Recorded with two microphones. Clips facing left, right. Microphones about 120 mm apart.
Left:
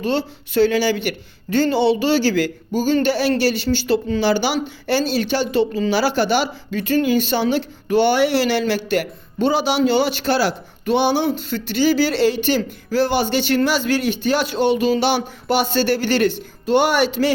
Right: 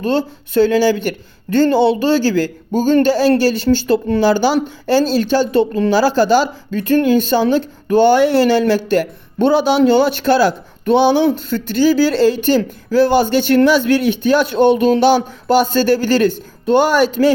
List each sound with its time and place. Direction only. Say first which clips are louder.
0.0 s speech: right 4 dB; 45° right (ahead or behind)